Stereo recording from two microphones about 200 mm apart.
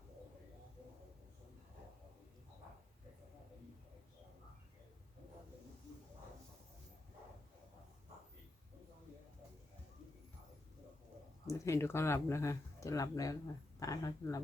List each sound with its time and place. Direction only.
11.4 s speech: 15° left (ahead or behind)